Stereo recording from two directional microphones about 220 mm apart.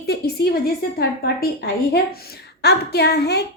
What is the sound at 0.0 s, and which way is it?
A woman's voice, 45° left (ahead or behind).